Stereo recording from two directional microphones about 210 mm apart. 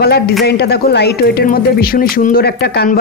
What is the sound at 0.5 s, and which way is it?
Speech, 50° left (ahead or behind).